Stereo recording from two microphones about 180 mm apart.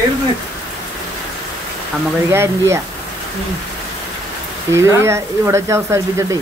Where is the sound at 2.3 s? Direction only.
15° right (ahead or behind).